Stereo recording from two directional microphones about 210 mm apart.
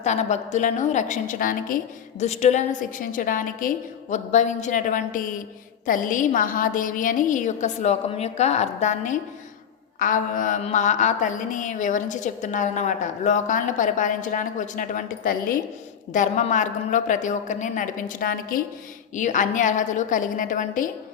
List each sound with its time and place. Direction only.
0.0 s a woman's voice: 35° left (ahead or behind)